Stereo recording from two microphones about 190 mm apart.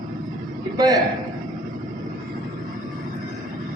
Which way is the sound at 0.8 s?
20° right (ahead or behind).